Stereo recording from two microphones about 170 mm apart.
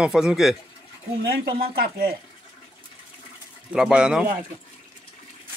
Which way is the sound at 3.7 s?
5° right (ahead or behind).